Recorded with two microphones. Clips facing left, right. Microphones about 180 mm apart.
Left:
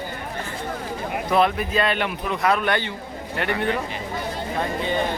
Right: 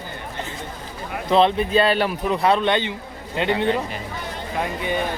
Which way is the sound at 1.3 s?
25° right (ahead or behind).